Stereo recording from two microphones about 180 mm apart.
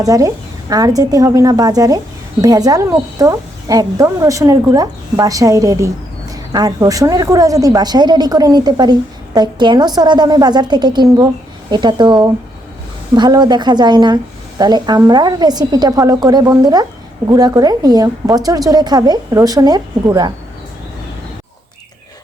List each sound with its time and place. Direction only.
0.0 s a woman's voice: 20° right (ahead or behind)